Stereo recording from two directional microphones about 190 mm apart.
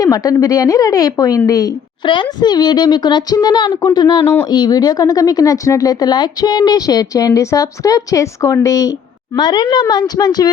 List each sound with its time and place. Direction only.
0.0 s speech: 20° left (ahead or behind)